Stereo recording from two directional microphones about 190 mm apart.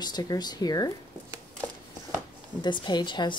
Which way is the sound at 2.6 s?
25° left (ahead or behind).